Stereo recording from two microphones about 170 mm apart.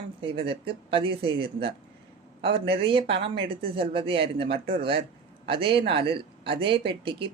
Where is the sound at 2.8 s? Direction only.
30° right (ahead or behind).